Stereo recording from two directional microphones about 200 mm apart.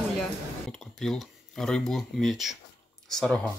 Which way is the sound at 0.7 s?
5° left (ahead or behind).